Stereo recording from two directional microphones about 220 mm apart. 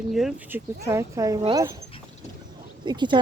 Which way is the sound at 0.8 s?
15° right (ahead or behind).